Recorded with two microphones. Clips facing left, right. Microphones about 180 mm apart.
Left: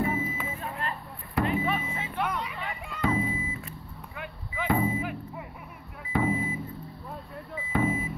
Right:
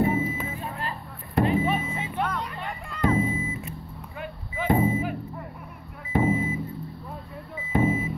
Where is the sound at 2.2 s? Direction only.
5° left (ahead or behind).